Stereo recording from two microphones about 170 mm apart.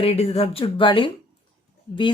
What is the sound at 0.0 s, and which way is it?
A woman's voice, 35° left (ahead or behind).